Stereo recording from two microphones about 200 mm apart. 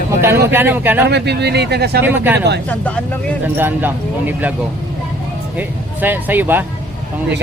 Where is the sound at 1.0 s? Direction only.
55° right (ahead or behind).